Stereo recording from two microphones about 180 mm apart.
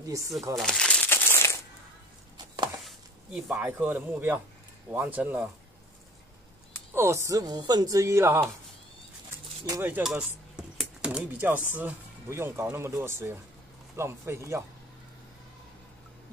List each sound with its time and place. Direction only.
0.6 s crumpling: 5° left (ahead or behind)
2.3 s chopping: 25° right (ahead or behind)
3.3 s speech: 5° right (ahead or behind)
6.9 s speech: 15° right (ahead or behind)
9.7 s speech: 10° right (ahead or behind)